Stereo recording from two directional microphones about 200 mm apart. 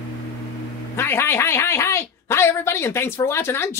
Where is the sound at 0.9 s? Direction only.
10° left (ahead or behind).